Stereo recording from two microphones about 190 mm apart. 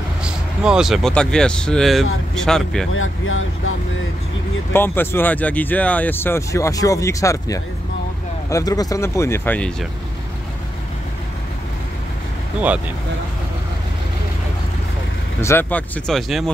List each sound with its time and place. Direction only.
0.2 s speech: 5° right (ahead or behind)
2.9 s speech: 90° left
4.7 s speech: 10° left (ahead or behind)
15.4 s speech: 10° left (ahead or behind)